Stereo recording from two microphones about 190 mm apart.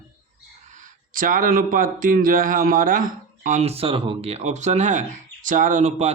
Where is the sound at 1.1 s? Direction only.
45° right (ahead or behind).